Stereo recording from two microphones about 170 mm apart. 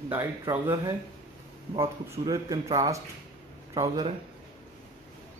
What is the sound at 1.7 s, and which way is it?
Speech, 25° right (ahead or behind).